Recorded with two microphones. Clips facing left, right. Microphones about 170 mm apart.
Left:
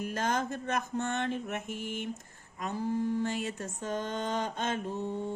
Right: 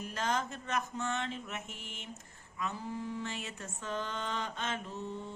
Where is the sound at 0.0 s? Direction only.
50° left (ahead or behind).